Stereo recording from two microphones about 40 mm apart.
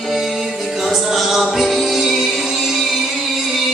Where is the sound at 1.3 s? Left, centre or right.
Centre.